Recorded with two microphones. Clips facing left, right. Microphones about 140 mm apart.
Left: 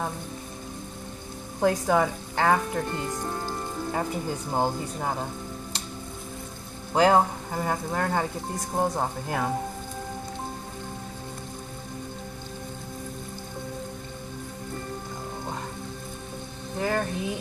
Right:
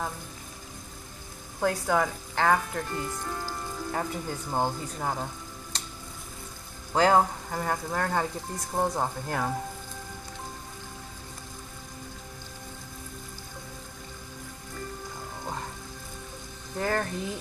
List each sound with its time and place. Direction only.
1.6 s speech: 15° left (ahead or behind)
6.9 s speech: 10° left (ahead or behind)
8.7 s speech: 5° left (ahead or behind)
16.8 s speech: 10° left (ahead or behind)